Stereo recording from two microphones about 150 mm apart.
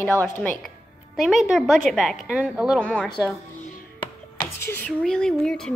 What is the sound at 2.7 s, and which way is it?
Speech, 5° left (ahead or behind).